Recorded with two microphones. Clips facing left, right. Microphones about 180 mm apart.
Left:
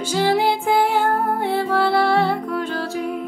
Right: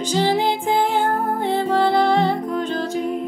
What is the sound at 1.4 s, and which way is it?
Music, 20° right (ahead or behind).